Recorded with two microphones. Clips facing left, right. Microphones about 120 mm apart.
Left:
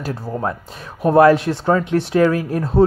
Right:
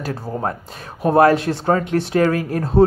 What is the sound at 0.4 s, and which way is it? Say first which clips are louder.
Speech: left 1 dB; 40° right (ahead or behind).